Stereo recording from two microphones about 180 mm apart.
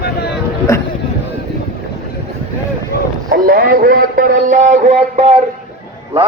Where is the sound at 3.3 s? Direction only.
55° right (ahead or behind); by 5.4 s 35° right (ahead or behind).